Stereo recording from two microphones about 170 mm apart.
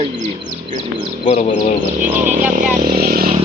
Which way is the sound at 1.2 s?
40° left (ahead or behind).